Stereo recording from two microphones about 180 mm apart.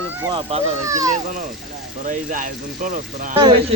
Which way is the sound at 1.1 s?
45° right (ahead or behind).